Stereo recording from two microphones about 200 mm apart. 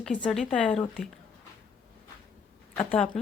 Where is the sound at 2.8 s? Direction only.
10° left (ahead or behind).